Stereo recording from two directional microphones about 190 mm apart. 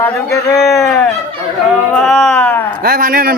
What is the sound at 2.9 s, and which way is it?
Speech, 50° right (ahead or behind).